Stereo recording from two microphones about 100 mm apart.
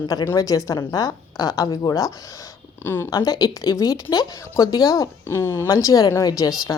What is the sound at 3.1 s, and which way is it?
A woman's voice, 40° left (ahead or behind).